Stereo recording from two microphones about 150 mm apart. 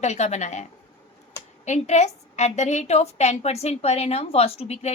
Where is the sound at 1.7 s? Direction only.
50° left (ahead or behind).